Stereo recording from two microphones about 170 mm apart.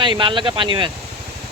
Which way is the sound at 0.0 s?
30° right (ahead or behind).